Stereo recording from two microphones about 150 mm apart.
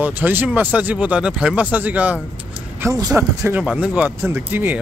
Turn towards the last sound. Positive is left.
turn(degrees=-10)  # may be behind; listen again after turning